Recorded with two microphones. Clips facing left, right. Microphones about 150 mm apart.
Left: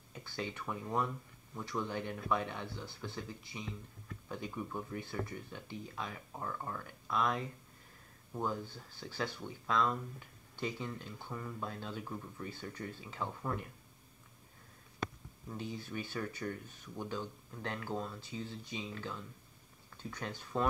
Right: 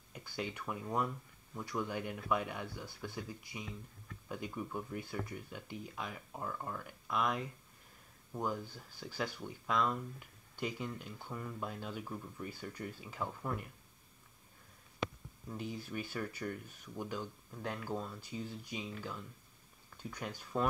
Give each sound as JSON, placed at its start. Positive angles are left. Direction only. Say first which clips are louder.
{"t": 0.1, "sound": "speech", "louder": "even", "side_deg": -10}
{"t": 15.5, "sound": "speech", "louder": "even", "side_deg": -10}